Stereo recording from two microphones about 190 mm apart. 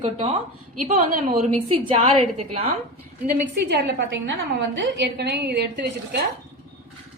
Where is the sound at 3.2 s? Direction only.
60° right (ahead or behind).